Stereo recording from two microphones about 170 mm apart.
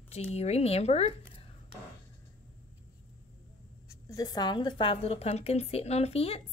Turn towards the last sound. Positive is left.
turn(degrees=35)  # may be behind; listen again after turning